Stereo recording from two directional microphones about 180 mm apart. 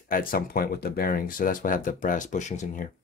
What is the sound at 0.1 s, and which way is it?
Speech, 50° left (ahead or behind).